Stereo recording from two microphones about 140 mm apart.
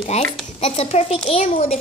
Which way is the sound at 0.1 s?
50° left (ahead or behind).